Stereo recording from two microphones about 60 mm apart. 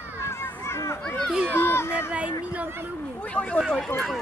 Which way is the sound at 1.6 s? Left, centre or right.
Left.